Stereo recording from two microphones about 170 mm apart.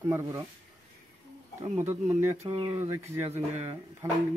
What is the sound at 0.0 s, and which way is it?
Speech, 15° right (ahead or behind).